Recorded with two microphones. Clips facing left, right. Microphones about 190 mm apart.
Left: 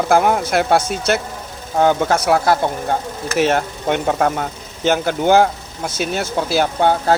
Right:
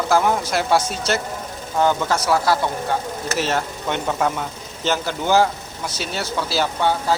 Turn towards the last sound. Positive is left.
turn(degrees=55)  # may be behind; listen again after turning